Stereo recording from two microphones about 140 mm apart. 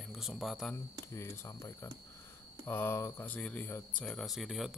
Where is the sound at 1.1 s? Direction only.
20° left (ahead or behind).